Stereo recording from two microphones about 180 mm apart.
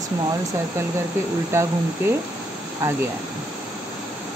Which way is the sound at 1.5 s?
15° right (ahead or behind).